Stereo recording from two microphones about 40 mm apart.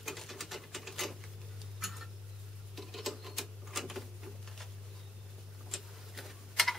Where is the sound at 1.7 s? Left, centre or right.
Centre.